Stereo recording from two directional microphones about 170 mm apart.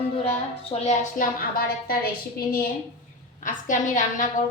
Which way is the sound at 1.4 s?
60° left (ahead or behind).